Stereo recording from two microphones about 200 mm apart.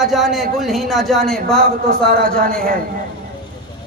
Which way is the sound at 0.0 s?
Centre (ahead or behind).